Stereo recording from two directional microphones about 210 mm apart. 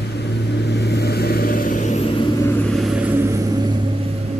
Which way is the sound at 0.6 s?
50° left (ahead or behind).